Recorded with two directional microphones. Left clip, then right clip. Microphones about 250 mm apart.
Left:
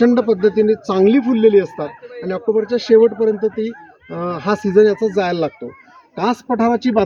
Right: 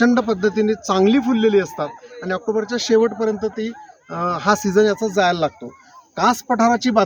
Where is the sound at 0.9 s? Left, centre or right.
Centre.